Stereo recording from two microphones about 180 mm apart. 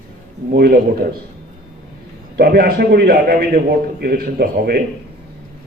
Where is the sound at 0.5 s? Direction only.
60° right (ahead or behind).